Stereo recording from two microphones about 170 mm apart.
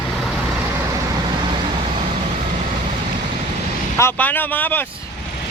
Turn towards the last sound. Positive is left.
turn(degrees=10)  # may be behind; listen again after turning